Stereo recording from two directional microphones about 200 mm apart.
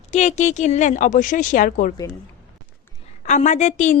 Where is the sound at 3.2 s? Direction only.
35° left (ahead or behind).